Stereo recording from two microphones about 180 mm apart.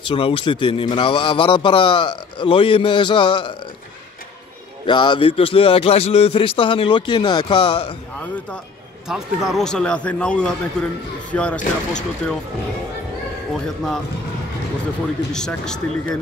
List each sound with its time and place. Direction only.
0.1 s a man's voice: 30° left (ahead or behind)
4.8 s a man's voice: 25° left (ahead or behind)
9.0 s a man's voice: 5° right (ahead or behind)
15.3 s a man's voice: 5° left (ahead or behind)